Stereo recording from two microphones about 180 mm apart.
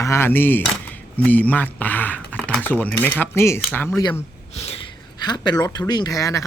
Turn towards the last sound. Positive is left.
turn(degrees=15)  # may be behind; listen again after turning